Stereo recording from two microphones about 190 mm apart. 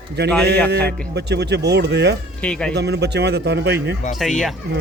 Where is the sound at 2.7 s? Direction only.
60° right (ahead or behind).